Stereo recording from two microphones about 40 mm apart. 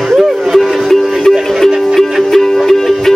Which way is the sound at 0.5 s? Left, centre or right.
Centre.